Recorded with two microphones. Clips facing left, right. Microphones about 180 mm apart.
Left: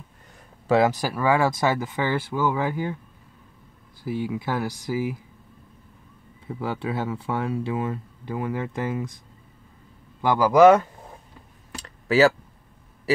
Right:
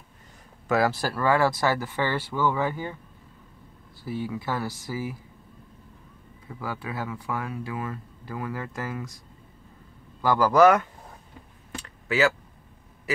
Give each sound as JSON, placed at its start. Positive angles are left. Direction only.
{"t": 0.7, "sound": "speech", "side_deg": 20}
{"t": 4.0, "sound": "speech", "side_deg": 15}
{"t": 6.4, "sound": "speech", "side_deg": 25}
{"t": 10.2, "sound": "speech", "side_deg": 20}
{"t": 11.7, "sound": "a sound", "side_deg": 35}